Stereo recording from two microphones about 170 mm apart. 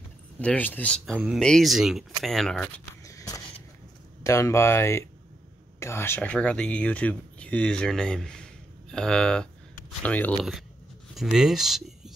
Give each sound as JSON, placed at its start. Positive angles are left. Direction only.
{"t": 0.4, "sound": "speech", "side_deg": 10}
{"t": 3.0, "sound": "a sound", "side_deg": 20}
{"t": 4.2, "sound": "speech", "side_deg": 15}
{"t": 11.1, "sound": "speech", "side_deg": 0}